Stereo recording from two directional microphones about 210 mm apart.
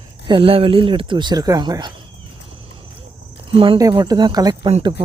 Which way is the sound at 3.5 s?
25° right (ahead or behind).